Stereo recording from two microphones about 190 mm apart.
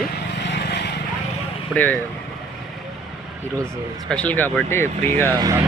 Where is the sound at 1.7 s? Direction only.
10° left (ahead or behind).